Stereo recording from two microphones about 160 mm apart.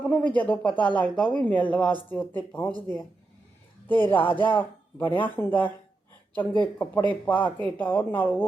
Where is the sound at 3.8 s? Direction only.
10° left (ahead or behind).